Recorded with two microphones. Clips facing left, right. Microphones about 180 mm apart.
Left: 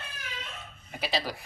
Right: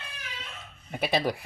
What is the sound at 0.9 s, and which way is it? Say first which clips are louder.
Speech: right 5 dB; 55° right (ahead or behind).